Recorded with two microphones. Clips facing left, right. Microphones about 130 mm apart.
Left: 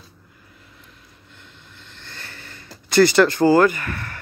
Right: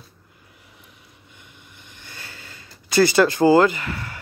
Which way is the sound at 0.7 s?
15° right (ahead or behind).